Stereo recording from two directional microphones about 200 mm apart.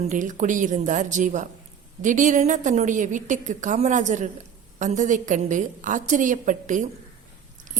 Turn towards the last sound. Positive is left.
turn(degrees=-40)  # may be behind; listen again after turning